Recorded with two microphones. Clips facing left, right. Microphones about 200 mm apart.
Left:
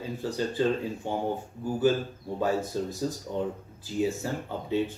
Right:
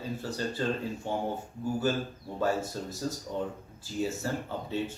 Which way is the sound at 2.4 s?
15° left (ahead or behind).